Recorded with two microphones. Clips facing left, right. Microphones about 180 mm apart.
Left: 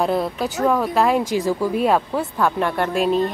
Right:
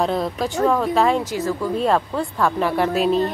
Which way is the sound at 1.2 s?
15° left (ahead or behind).